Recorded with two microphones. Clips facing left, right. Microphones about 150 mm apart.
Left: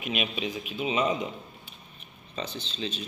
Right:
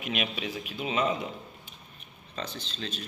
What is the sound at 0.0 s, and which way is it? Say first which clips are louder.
A man's voice: left 2 dB; 15° left (ahead or behind).